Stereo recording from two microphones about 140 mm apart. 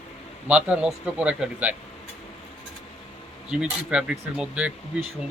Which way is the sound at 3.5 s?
5° right (ahead or behind).